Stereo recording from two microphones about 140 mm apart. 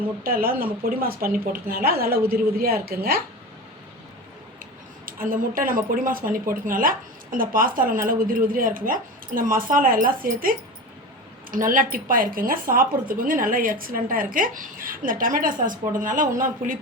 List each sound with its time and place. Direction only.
0.2 s a woman's voice: 90° right
4.6 s a woman's voice: 85° right
11.5 s a woman's voice: 75° right (ahead or behind)